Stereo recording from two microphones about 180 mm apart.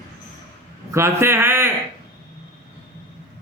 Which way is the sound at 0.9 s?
15° right (ahead or behind).